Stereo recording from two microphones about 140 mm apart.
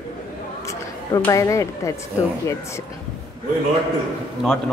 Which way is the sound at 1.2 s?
25° left (ahead or behind).